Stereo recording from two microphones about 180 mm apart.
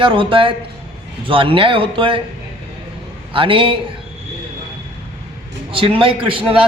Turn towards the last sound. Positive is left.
turn(degrees=-30)  # may be behind; listen again after turning